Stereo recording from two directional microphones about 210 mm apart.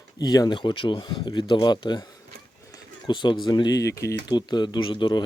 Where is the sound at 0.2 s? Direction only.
20° left (ahead or behind).